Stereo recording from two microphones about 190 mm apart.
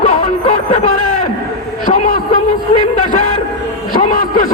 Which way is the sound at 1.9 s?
40° left (ahead or behind).